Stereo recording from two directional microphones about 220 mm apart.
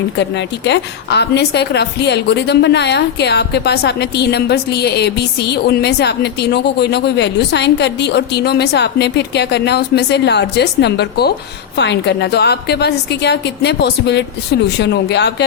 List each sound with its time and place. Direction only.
0.2 s a woman's voice: 50° left (ahead or behind)